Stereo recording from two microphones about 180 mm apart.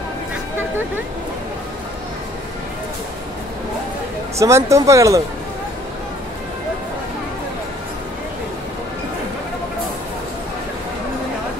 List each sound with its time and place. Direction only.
4.4 s speech: 15° right (ahead or behind)